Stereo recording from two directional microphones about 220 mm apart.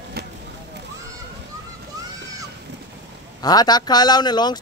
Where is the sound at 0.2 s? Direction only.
45° right (ahead or behind).